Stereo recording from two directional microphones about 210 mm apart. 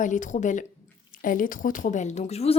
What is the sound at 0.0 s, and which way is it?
A woman's voice, 35° left (ahead or behind).